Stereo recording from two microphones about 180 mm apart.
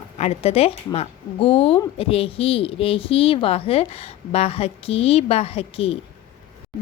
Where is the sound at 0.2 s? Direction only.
35° left (ahead or behind).